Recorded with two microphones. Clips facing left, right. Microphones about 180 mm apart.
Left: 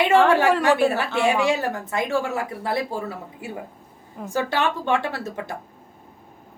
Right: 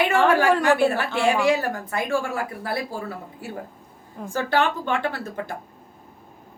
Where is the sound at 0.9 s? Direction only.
20° left (ahead or behind).